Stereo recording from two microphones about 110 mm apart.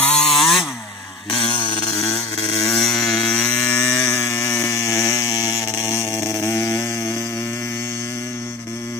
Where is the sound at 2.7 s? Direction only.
5° left (ahead or behind).